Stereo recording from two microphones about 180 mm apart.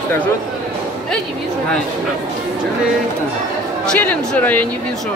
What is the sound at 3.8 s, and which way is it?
Speech, 5° left (ahead or behind).